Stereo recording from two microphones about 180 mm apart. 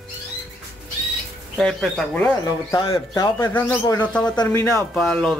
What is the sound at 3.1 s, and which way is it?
Speech, 15° left (ahead or behind).